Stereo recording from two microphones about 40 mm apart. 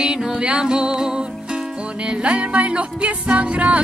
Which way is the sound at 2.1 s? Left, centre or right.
Right.